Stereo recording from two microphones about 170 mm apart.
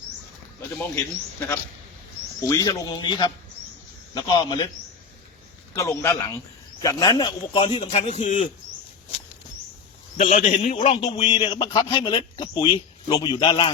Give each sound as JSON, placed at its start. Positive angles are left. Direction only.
{"t": 2.4, "sound": "a man's voice", "side_deg": 20}
{"t": 5.7, "sound": "a man's voice", "side_deg": 15}
{"t": 10.2, "sound": "a man's voice", "side_deg": 45}